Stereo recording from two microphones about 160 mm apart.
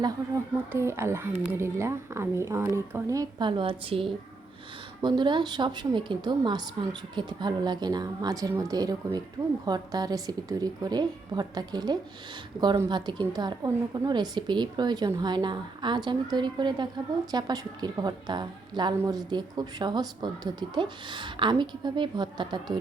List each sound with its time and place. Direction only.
0.5 s a woman's voice: 15° right (ahead or behind)